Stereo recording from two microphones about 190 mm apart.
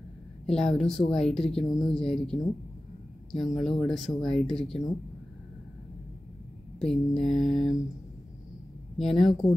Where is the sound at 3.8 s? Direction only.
Centre (ahead or behind).